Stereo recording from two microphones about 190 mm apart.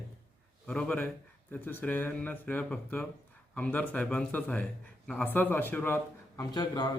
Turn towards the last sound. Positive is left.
turn(degrees=20)  # may be behind; listen again after turning